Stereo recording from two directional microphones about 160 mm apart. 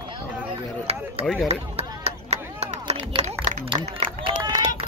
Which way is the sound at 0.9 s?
40° right (ahead or behind).